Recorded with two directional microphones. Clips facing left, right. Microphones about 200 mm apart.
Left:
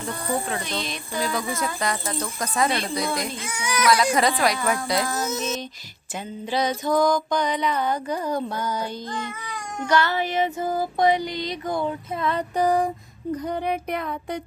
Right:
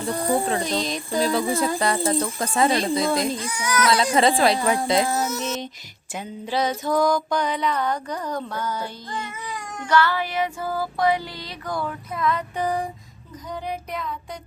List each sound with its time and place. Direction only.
0.1 s speech: 35° right (ahead or behind)
3.4 s speech: 10° left (ahead or behind)
3.8 s speech: 25° right (ahead or behind)
5.3 s music: 20° left (ahead or behind)
6.1 s music: 5° right (ahead or behind); by 8.9 s 15° left (ahead or behind)
9.9 s music: 20° left (ahead or behind); by 12.9 s 45° left (ahead or behind)
13.3 s child singing: 60° left (ahead or behind)